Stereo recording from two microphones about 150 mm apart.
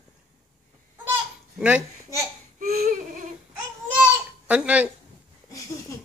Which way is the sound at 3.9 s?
10° right (ahead or behind).